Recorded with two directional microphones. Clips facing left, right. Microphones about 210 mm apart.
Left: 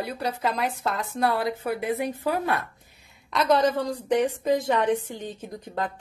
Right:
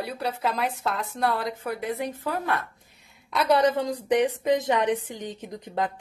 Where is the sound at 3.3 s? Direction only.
15° right (ahead or behind).